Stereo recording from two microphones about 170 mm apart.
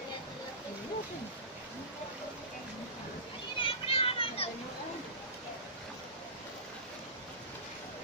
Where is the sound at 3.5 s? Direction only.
30° left (ahead or behind).